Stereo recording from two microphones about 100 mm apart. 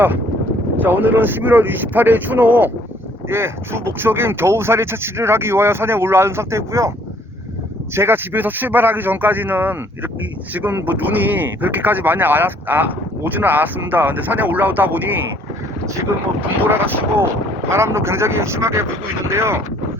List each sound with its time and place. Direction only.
0.8 s speech: 20° right (ahead or behind)
7.9 s speech: 25° right (ahead or behind)
16.6 s speech: 20° right (ahead or behind)